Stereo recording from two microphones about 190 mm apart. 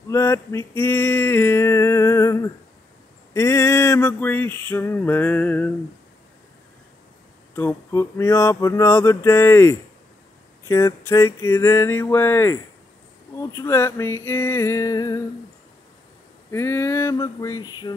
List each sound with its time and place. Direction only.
0.1 s a sound: 15° left (ahead or behind)
3.3 s male singing: 15° left (ahead or behind)
7.5 s male singing: 10° left (ahead or behind)
16.4 s male singing: 15° left (ahead or behind)